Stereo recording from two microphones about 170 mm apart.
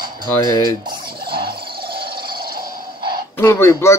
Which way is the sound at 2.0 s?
65° right (ahead or behind).